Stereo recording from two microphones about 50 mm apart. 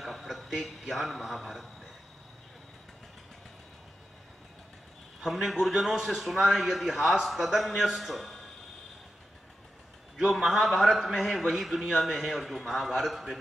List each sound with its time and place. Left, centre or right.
0.0 s a man's voice: centre
5.2 s a man's voice: centre
10.1 s a man's voice: centre